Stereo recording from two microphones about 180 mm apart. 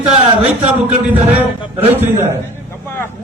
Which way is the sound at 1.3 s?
10° right (ahead or behind).